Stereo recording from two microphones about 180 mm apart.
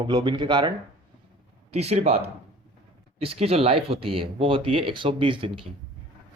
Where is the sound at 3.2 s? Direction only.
35° right (ahead or behind).